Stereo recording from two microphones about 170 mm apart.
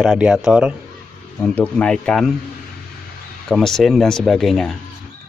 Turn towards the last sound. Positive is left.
turn(degrees=0)  # may be behind; listen again after turning